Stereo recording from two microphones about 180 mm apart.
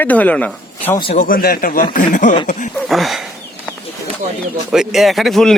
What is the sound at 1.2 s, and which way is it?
Speech, 50° left (ahead or behind).